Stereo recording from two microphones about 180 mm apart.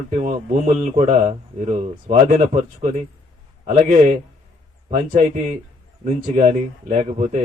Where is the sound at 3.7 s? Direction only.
40° right (ahead or behind).